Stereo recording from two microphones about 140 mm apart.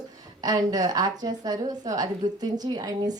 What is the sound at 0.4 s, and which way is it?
A woman's voice, 30° right (ahead or behind).